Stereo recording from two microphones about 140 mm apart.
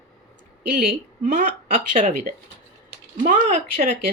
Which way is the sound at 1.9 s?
65° right (ahead or behind).